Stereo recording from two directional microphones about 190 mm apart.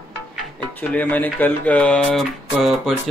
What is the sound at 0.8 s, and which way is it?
Speech, 5° left (ahead or behind).